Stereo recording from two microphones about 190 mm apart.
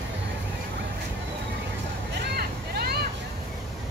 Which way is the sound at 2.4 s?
55° right (ahead or behind).